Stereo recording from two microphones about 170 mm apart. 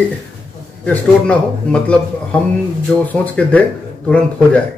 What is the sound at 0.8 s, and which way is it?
Speech, 5° left (ahead or behind).